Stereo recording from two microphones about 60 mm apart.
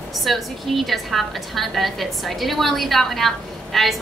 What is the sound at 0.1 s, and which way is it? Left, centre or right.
A woman's voice, centre.